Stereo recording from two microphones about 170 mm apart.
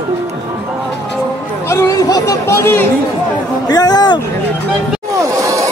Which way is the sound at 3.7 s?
20° left (ahead or behind).